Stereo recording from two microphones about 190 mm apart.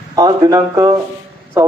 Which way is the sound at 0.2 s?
20° right (ahead or behind).